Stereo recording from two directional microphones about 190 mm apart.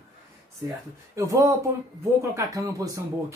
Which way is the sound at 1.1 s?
15° right (ahead or behind).